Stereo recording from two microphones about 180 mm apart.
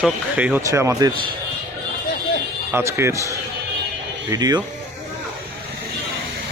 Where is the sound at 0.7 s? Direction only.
20° right (ahead or behind).